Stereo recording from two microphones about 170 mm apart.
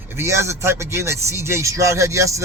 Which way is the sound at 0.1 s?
15° right (ahead or behind).